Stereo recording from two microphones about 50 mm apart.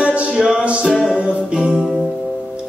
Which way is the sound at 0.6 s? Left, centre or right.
Right.